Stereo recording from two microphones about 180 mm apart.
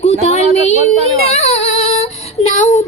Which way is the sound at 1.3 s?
35° left (ahead or behind).